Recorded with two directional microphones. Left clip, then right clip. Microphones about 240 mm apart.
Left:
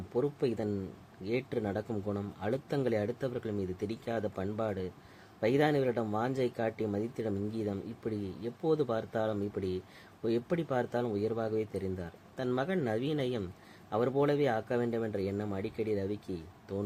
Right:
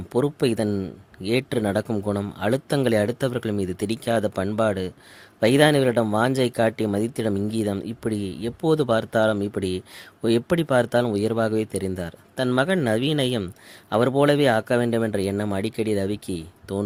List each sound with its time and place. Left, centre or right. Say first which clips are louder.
0.1 s speech: right 10 dB; right